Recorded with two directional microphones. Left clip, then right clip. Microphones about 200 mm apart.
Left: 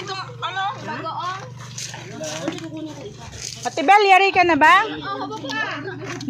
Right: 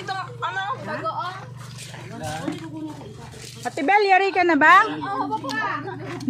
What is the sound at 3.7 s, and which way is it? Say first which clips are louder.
Speech: left 4 dB; 10° right (ahead or behind).